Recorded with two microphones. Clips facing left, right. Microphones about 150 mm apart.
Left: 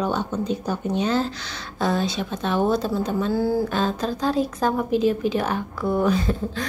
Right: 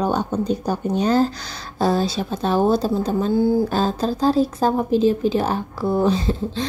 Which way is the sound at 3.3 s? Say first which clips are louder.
Right 5 dB; 20° right (ahead or behind).